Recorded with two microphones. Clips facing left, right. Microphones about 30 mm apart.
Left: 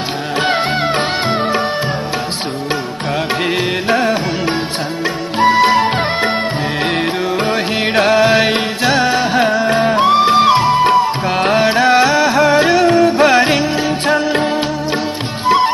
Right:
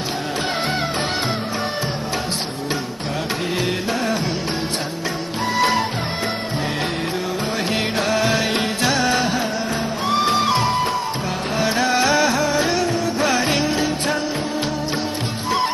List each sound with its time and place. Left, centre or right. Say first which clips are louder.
3.9 s music: left 11 dB; left
5.6 s music: left 3 dB; left
7.9 s music: left 11 dB; left
8.5 s music: left 5 dB; left
9.7 s music: left 11 dB; left
10.0 s music: left 6 dB; left
12.0 s music: left 5 dB; centre
12.4 s music: left 8 dB; left
12.8 s music: left 10 dB; left
15.4 s music: left 9 dB; left